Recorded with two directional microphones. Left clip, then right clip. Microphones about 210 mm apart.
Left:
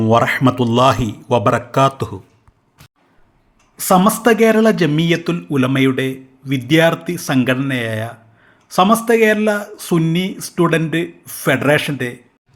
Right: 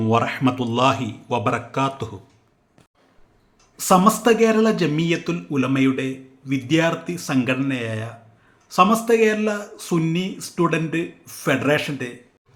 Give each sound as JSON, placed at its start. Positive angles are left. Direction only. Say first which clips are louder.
{"t": 0.0, "sound": "speech", "louder": "left 6 dB", "side_deg": 25}
{"t": 3.8, "sound": "speech", "louder": "left 2 dB", "side_deg": 15}